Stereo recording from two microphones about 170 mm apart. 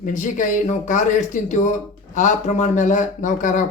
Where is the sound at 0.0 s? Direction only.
50° left (ahead or behind).